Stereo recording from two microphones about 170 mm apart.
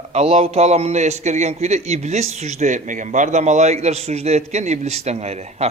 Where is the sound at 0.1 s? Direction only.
40° right (ahead or behind).